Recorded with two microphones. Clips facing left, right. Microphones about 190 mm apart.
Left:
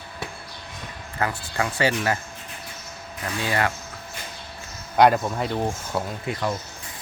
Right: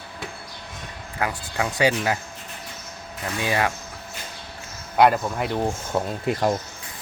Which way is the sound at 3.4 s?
15° right (ahead or behind).